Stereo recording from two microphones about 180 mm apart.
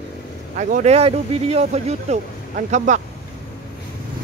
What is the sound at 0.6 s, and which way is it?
Speech, 45° right (ahead or behind).